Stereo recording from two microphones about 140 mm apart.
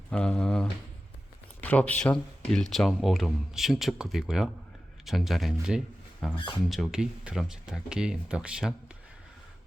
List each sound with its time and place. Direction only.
0.1 s speech: 5° left (ahead or behind)
6.3 s speech: 35° left (ahead or behind)
6.7 s speech: centre (ahead or behind)